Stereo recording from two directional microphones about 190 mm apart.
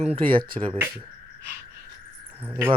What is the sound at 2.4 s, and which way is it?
Speech, 10° right (ahead or behind).